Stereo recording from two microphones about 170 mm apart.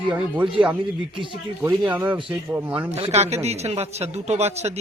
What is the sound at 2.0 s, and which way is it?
Speech, 10° right (ahead or behind).